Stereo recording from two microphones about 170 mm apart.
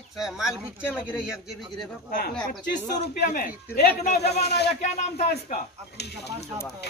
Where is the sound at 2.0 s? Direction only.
60° left (ahead or behind).